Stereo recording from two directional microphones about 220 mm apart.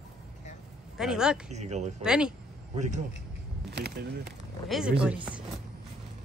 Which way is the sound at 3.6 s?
50° right (ahead or behind).